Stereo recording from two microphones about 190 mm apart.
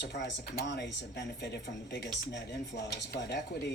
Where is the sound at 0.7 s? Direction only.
65° left (ahead or behind).